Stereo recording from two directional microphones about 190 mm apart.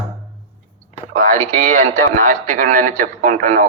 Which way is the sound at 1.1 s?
45° right (ahead or behind).